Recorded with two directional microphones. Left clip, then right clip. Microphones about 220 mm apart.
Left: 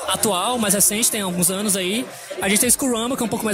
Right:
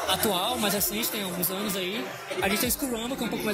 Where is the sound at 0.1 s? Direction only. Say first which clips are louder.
Left 7 dB; 40° left (ahead or behind).